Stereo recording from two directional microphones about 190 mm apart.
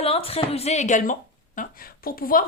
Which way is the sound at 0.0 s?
30° left (ahead or behind).